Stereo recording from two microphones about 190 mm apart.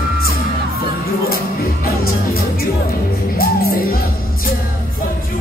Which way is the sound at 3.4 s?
50° left (ahead or behind).